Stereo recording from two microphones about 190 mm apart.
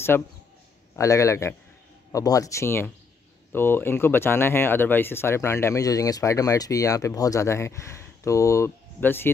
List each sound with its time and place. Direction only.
0.1 s speech: 10° left (ahead or behind)